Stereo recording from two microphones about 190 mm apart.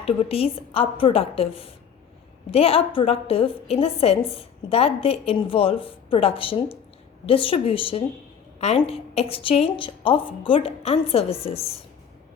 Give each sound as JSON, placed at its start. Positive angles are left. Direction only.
{"t": 0.0, "sound": "a woman's voice", "side_deg": 30}